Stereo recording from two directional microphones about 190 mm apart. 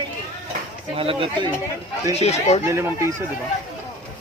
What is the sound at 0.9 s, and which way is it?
Speech, 30° right (ahead or behind).